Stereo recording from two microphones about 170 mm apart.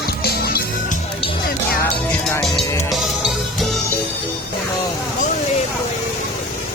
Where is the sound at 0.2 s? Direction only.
65° left (ahead or behind).